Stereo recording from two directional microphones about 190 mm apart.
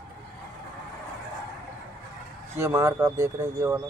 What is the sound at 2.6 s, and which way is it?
Speech, 15° right (ahead or behind).